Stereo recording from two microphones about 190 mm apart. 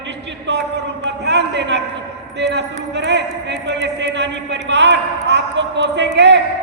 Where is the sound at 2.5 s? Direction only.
65° right (ahead or behind).